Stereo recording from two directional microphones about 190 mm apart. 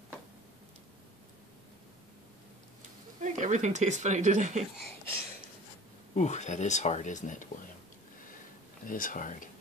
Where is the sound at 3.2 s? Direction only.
40° right (ahead or behind).